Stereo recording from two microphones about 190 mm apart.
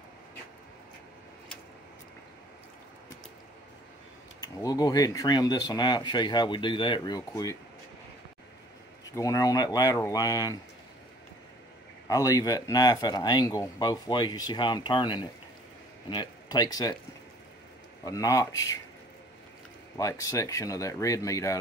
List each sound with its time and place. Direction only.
4.4 s speech: 20° left (ahead or behind)
9.1 s speech: 15° left (ahead or behind)
12.1 s speech: 15° left (ahead or behind)
18.0 s speech: 15° left (ahead or behind)
20.0 s speech: 15° left (ahead or behind)